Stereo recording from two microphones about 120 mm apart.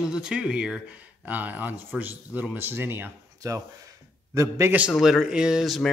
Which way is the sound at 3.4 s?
30° right (ahead or behind).